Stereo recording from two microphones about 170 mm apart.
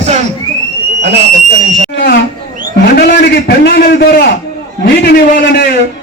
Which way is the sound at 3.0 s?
70° left (ahead or behind).